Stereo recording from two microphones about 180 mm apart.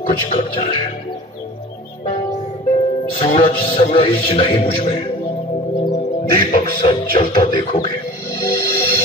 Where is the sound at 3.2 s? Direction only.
30° left (ahead or behind).